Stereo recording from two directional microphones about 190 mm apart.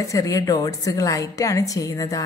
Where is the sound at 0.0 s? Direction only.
15° left (ahead or behind).